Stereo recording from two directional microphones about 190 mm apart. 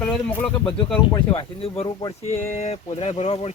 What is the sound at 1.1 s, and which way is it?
Speech, 25° left (ahead or behind).